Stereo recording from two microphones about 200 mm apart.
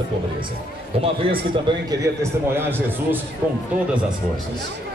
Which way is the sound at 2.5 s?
10° right (ahead or behind).